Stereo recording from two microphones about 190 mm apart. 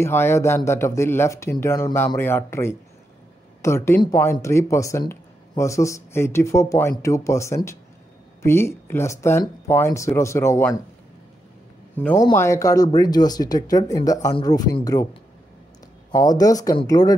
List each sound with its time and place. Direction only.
0.0 s speech: 10° left (ahead or behind)
11.9 s a man's voice: 10° left (ahead or behind)
16.1 s speech: 20° left (ahead or behind)